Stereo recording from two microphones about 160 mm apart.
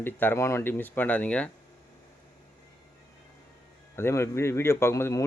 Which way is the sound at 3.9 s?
15° left (ahead or behind).